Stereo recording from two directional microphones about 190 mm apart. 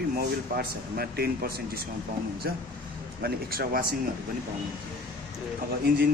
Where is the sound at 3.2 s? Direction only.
50° right (ahead or behind).